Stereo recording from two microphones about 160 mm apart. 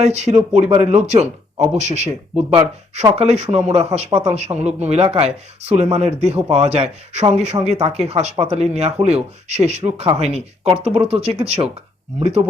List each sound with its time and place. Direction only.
0.0 s speech: 45° right (ahead or behind)